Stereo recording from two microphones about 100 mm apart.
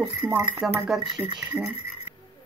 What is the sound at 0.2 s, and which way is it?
Speech, 5° left (ahead or behind).